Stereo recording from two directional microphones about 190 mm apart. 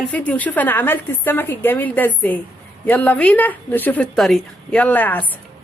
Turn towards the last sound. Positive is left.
turn(degrees=10)  # may be behind; listen again after turning